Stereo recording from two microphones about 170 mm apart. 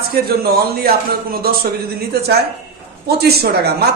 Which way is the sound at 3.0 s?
70° right (ahead or behind).